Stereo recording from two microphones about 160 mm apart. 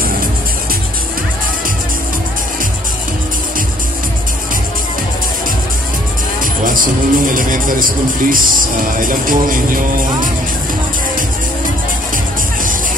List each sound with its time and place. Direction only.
6.4 s speech: 55° right (ahead or behind)